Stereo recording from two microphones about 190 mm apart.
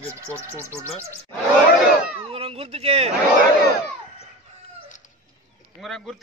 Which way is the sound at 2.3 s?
30° right (ahead or behind).